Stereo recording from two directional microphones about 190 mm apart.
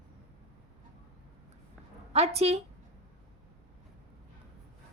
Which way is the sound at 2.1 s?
35° right (ahead or behind).